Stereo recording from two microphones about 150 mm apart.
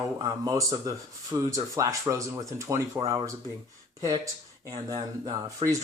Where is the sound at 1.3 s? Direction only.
20° right (ahead or behind).